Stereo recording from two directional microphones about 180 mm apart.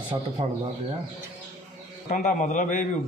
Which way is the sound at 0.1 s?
25° right (ahead or behind).